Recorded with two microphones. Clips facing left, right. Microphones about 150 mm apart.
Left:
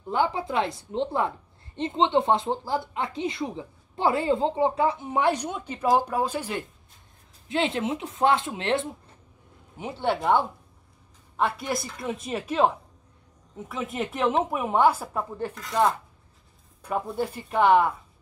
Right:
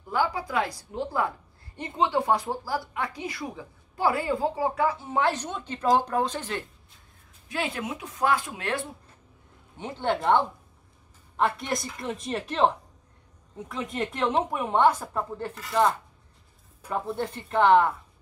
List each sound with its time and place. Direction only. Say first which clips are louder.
0.0 s speech: left 2 dB; 25° left (ahead or behind)
7.4 s speech: left 5 dB; 25° left (ahead or behind)
9.8 s a woman's voice: left 1 dB; 5° left (ahead or behind)
15.5 s a woman's voice: even; centre (ahead or behind)
16.9 s speech: left 2 dB; 5° left (ahead or behind)